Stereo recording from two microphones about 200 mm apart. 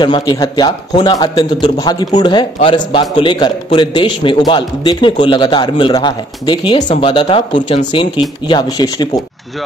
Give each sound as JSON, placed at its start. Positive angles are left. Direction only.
{"t": 0.0, "sound": "a man's voice", "side_deg": 20}